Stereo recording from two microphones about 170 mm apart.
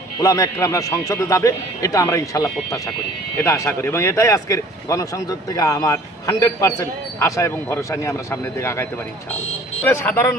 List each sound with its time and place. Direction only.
0.2 s a man's voice: 20° left (ahead or behind)